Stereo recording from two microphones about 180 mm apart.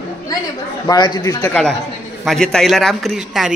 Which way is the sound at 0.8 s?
25° left (ahead or behind).